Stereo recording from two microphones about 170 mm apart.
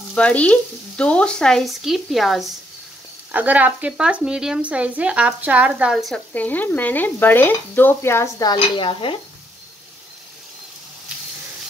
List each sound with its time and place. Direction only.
0.1 s a woman's voice: 5° left (ahead or behind)
8.5 s dishes: 30° left (ahead or behind)